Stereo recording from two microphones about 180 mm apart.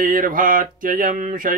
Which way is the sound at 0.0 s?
50° right (ahead or behind).